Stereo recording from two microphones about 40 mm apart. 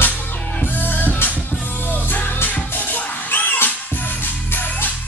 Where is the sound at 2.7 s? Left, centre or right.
Left.